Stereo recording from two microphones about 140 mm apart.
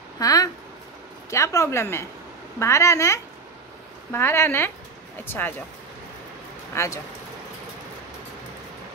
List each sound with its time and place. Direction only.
0.2 s speech: 25° left (ahead or behind)
6.7 s speech: 20° left (ahead or behind)